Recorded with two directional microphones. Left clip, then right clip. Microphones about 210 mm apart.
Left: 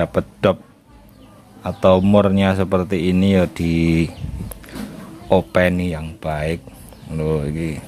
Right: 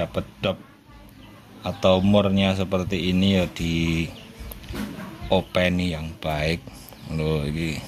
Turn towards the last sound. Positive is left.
turn(degrees=5)  # may be behind; listen again after turning